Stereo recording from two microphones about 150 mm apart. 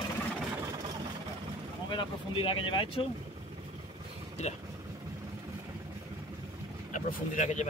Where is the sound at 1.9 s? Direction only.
35° left (ahead or behind).